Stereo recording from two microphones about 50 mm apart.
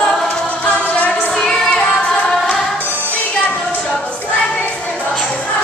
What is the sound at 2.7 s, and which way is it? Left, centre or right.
Music, right.